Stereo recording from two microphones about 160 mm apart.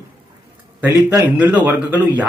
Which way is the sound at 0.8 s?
15° right (ahead or behind).